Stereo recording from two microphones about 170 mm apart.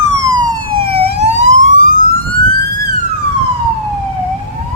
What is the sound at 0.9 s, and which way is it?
Emergency vehicle, 40° right (ahead or behind).